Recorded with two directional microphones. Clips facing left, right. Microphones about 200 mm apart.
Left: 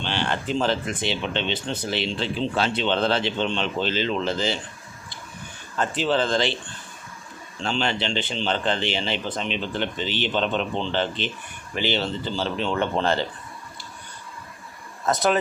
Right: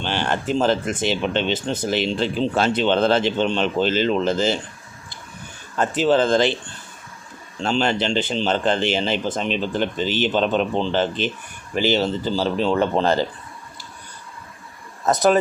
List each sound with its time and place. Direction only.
0.0 s speech: 45° right (ahead or behind)
5.7 s speech: 45° right (ahead or behind)
7.6 s speech: 45° right (ahead or behind)
15.0 s speech: 40° right (ahead or behind)